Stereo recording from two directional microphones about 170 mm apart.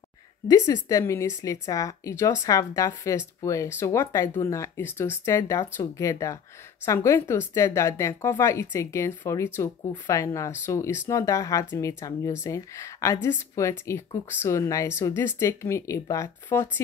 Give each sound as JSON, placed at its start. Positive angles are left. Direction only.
{"t": 0.5, "sound": "a woman's voice", "side_deg": 20}